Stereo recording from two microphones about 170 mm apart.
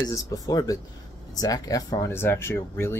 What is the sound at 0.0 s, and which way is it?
Speech, 20° left (ahead or behind).